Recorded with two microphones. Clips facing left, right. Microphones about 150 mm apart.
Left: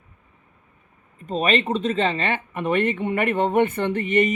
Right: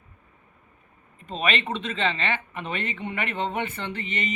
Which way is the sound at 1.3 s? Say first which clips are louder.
Left 6 dB; 45° left (ahead or behind).